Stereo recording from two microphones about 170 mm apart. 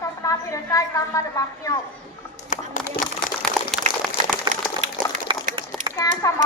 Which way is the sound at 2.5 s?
45° left (ahead or behind).